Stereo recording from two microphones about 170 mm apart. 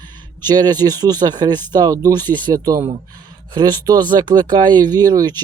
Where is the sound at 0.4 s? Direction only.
25° right (ahead or behind).